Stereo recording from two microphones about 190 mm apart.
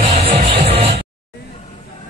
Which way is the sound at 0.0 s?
30° right (ahead or behind).